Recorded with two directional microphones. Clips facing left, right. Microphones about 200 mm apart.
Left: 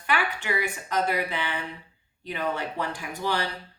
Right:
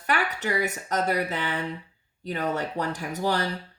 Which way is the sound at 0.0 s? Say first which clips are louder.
Right 1 dB; 40° right (ahead or behind).